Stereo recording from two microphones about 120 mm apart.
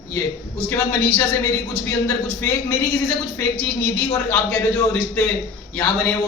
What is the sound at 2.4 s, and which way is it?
Speech, 20° left (ahead or behind).